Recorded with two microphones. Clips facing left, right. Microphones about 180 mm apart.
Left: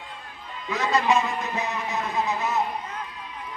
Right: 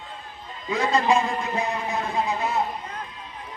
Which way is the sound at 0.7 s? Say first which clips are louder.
Right 1 dB; 30° right (ahead or behind).